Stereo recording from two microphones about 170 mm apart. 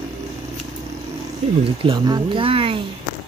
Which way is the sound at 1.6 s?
30° right (ahead or behind).